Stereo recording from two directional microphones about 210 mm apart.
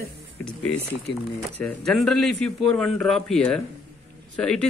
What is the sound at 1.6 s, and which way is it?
Speech, 5° left (ahead or behind).